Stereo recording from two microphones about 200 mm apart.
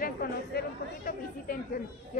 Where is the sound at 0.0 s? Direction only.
50° left (ahead or behind).